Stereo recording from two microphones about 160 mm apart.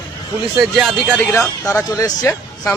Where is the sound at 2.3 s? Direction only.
15° left (ahead or behind).